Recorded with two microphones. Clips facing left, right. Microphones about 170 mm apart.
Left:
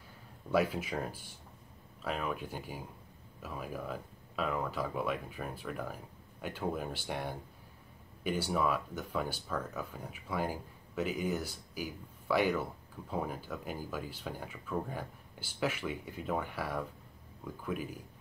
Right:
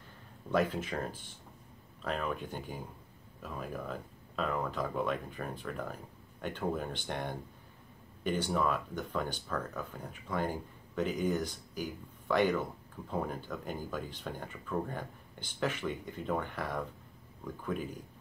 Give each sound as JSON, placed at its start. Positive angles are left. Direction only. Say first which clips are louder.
{"t": 0.5, "sound": "speech", "louder": "even", "side_deg": 10}